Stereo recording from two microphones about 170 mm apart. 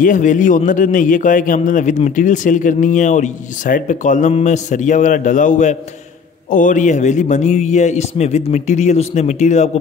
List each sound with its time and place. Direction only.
0.0 s a man's voice: 50° left (ahead or behind)